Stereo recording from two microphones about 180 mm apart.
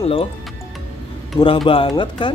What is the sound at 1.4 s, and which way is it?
Speech, 30° left (ahead or behind).